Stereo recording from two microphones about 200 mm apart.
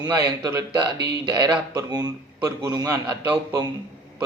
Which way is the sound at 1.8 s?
20° right (ahead or behind).